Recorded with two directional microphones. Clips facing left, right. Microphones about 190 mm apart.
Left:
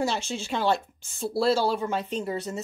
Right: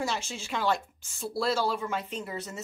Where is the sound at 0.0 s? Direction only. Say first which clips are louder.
Left 5 dB; 30° left (ahead or behind).